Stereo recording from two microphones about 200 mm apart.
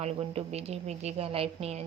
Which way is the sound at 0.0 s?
30° right (ahead or behind).